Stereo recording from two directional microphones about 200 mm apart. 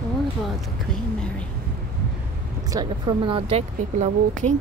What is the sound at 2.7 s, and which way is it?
Speech, 20° right (ahead or behind).